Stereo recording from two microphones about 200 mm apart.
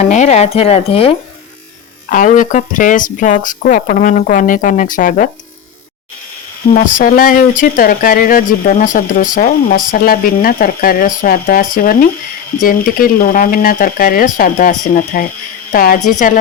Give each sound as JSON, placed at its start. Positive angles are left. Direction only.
{"t": 0.0, "sound": "speech", "side_deg": 35}
{"t": 2.0, "sound": "speech", "side_deg": 40}
{"t": 6.7, "sound": "speech", "side_deg": 45}